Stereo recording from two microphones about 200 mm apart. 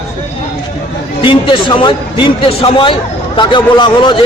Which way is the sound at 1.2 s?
25° left (ahead or behind).